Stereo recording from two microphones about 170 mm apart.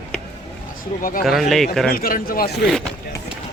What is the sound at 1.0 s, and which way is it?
Speech, 55° left (ahead or behind).